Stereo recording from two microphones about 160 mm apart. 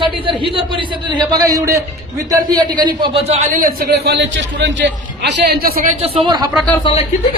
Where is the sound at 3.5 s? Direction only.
65° right (ahead or behind).